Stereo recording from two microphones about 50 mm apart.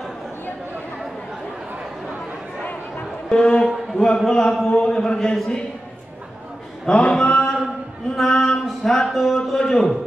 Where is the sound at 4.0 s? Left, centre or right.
Centre.